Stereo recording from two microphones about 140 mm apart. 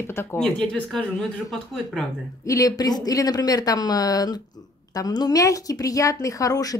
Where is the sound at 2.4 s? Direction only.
25° left (ahead or behind).